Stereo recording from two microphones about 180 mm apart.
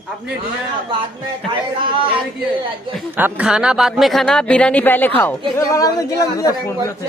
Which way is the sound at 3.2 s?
10° right (ahead or behind).